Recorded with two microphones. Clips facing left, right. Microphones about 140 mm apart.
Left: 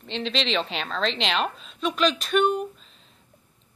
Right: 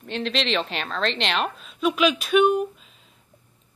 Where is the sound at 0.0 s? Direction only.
5° right (ahead or behind).